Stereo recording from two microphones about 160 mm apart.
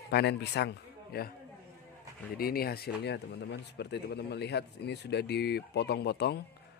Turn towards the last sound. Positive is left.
turn(degrees=90)